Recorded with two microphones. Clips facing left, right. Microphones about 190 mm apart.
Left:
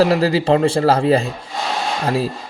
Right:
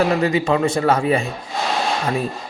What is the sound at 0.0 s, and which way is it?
Speech, 35° left (ahead or behind).